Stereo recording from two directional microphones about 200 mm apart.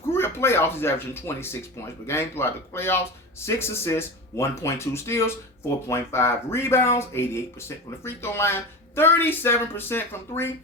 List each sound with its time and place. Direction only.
0.1 s speech: 10° left (ahead or behind)